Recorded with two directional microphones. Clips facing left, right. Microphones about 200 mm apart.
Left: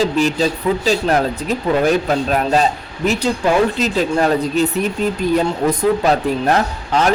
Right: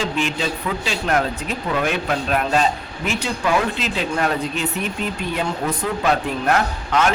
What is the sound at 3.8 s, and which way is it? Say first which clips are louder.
Speech: left 6 dB; 40° left (ahead or behind).